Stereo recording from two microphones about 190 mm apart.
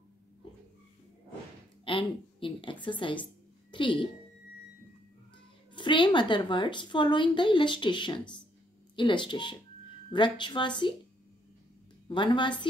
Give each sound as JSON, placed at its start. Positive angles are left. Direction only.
{"t": 1.9, "sound": "a woman's voice", "side_deg": 25}
{"t": 5.8, "sound": "a woman's voice", "side_deg": 25}
{"t": 12.1, "sound": "a woman's voice", "side_deg": 25}